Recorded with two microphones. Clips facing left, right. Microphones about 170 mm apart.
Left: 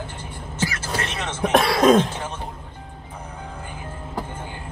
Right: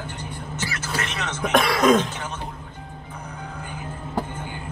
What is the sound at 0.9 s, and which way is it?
Throat clearing, 30° left (ahead or behind).